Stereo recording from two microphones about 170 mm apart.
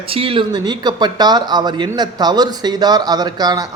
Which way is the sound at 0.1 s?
30° right (ahead or behind).